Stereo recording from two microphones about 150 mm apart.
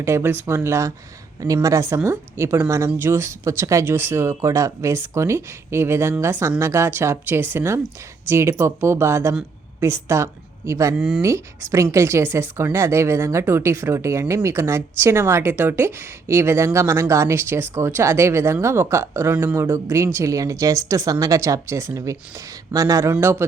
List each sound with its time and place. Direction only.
0.0 s a woman's voice: 15° right (ahead or behind)
10.9 s speech: 5° right (ahead or behind)
11.2 s a woman's voice: 20° right (ahead or behind)